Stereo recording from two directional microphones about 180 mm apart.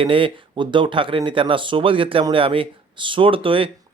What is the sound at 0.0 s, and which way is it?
Speech, 30° right (ahead or behind).